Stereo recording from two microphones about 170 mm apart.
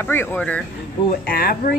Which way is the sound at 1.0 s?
60° left (ahead or behind).